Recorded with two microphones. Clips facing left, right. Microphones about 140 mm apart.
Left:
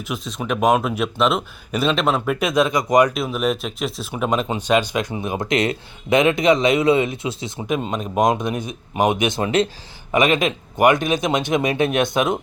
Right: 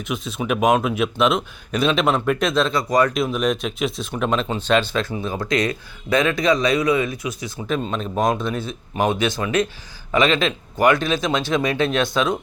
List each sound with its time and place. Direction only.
0.1 s speech: 5° right (ahead or behind); by 3.1 s 15° left (ahead or behind)
3.2 s speech: 5° left (ahead or behind); by 12.4 s 20° left (ahead or behind)